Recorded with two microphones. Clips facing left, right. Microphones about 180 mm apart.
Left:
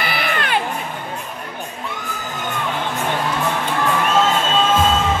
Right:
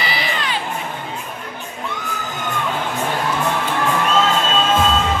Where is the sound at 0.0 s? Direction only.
55° left (ahead or behind).